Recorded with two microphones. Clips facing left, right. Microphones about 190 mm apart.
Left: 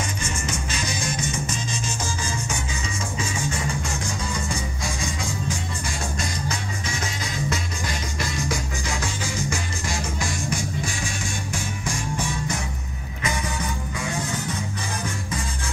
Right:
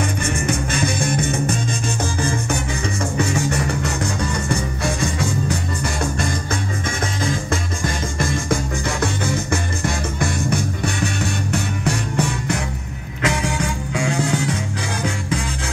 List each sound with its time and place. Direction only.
0.5 s music: 55° right (ahead or behind)
3.2 s music: 70° right (ahead or behind)
7.2 s music: 50° right (ahead or behind); by 15.4 s 75° right (ahead or behind)